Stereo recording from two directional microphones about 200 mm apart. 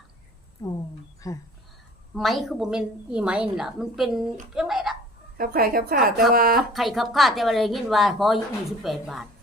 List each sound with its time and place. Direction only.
1.2 s speech: 20° left (ahead or behind)
2.1 s a woman's voice: centre (ahead or behind)
4.5 s a sound: centre (ahead or behind)
5.4 s a woman's voice: 50° right (ahead or behind)
6.6 s a woman's voice: centre (ahead or behind)